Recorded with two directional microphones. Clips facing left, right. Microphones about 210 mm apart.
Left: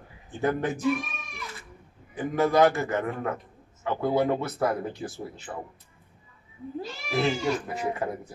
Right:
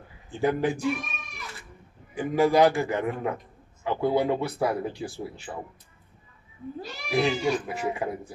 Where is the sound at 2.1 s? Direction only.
15° right (ahead or behind).